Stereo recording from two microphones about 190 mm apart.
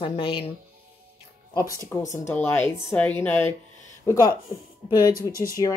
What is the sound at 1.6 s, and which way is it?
Speech, 15° right (ahead or behind).